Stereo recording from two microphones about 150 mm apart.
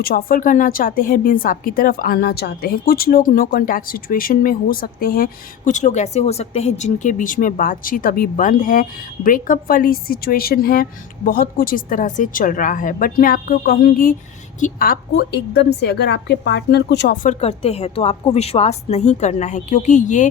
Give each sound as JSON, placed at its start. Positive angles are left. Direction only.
{"t": 0.0, "sound": "a woman's voice", "side_deg": 70}
{"t": 11.3, "sound": "a woman's voice", "side_deg": 70}
{"t": 17.2, "sound": "a woman's voice", "side_deg": 45}